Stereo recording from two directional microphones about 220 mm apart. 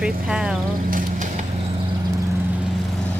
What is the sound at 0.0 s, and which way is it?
Speech, 5° right (ahead or behind).